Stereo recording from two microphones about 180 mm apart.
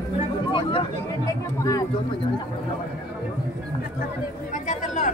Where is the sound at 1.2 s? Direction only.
20° left (ahead or behind).